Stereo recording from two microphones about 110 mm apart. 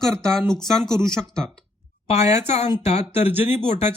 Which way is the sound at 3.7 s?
90° left.